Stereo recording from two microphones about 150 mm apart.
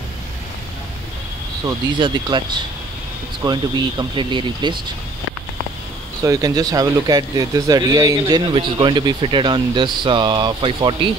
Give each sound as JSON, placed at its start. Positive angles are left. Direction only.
{"t": 2.0, "sound": "speech", "side_deg": -30}
{"t": 3.4, "sound": "speech", "side_deg": -30}
{"t": 6.2, "sound": "a man's voice", "side_deg": -20}